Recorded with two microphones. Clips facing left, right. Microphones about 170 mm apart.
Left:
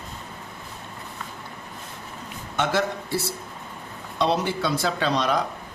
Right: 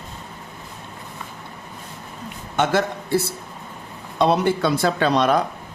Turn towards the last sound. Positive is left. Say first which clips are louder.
# right 5 dB
turn(degrees=-55)  # may be behind; listen again after turning